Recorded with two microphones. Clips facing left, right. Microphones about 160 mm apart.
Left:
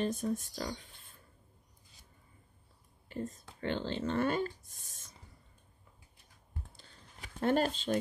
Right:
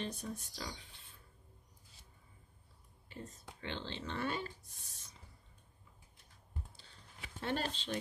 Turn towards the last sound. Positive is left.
turn(degrees=45)  # may be behind; listen again after turning